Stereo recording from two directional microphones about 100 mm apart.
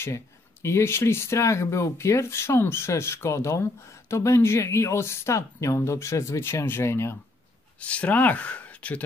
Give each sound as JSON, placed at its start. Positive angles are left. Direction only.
{"t": 0.0, "sound": "speech", "side_deg": 25}
{"t": 7.8, "sound": "speech", "side_deg": 15}